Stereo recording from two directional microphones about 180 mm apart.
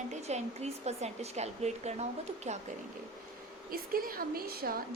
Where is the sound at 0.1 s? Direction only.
40° right (ahead or behind).